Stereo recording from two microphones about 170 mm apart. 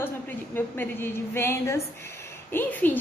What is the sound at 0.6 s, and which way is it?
A woman's voice, 15° left (ahead or behind).